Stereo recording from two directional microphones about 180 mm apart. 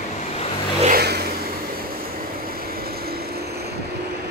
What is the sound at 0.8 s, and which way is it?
Vehicle, 60° right (ahead or behind).